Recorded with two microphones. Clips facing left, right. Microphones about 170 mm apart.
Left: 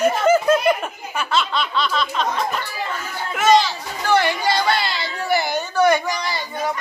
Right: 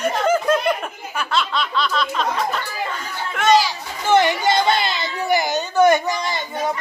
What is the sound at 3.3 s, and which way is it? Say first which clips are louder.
Speech: left 1 dB; centre (ahead or behind).